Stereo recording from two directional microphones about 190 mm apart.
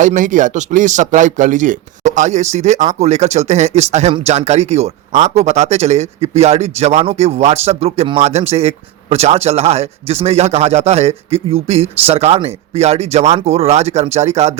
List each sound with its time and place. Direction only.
0.0 s speech: 40° right (ahead or behind)